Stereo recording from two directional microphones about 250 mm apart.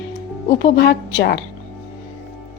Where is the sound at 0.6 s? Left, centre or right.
Left.